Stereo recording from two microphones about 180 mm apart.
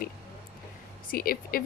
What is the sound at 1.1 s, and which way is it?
Speech, 55° left (ahead or behind).